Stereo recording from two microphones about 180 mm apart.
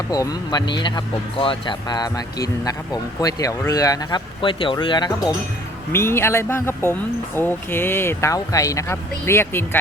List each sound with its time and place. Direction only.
0.1 s speech: 20° left (ahead or behind)